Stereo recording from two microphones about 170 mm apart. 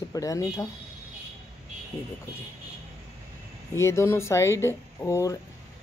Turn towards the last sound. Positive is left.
turn(degrees=20)  # may be behind; listen again after turning